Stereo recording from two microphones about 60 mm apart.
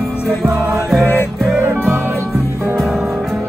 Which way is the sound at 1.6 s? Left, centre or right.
Right.